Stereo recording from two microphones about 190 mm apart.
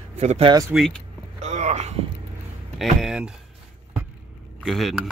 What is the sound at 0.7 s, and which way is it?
Speech, centre (ahead or behind).